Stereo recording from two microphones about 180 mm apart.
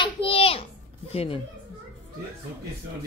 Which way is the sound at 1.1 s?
35° left (ahead or behind).